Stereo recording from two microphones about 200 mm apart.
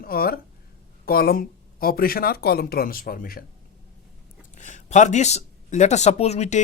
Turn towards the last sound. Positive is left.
turn(degrees=35)  # may be behind; listen again after turning